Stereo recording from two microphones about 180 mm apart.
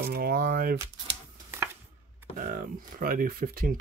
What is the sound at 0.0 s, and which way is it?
Speech, 55° right (ahead or behind).